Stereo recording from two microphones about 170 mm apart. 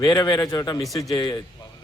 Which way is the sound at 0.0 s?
20° left (ahead or behind).